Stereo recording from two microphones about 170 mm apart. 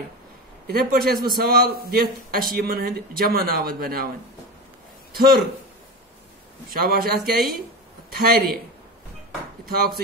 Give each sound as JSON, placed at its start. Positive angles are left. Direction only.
{"t": 0.7, "sound": "a man's voice", "side_deg": -65}
{"t": 5.1, "sound": "a man's voice", "side_deg": -60}
{"t": 6.7, "sound": "a man's voice", "side_deg": -60}